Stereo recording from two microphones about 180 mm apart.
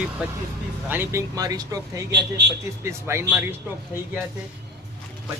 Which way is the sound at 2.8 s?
15° right (ahead or behind).